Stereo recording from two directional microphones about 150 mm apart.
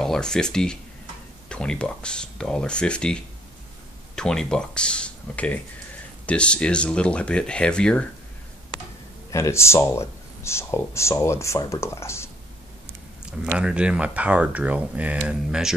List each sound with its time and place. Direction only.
0.0 s speech: 5° left (ahead or behind)
9.3 s speech: 20° left (ahead or behind)
13.5 s speech: 5° right (ahead or behind)